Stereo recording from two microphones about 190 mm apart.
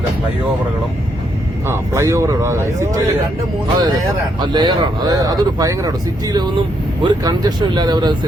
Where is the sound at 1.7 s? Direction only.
15° right (ahead or behind).